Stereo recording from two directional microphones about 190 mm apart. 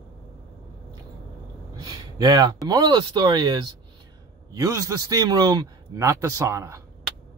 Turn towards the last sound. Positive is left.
turn(degrees=-15)  # may be behind; listen again after turning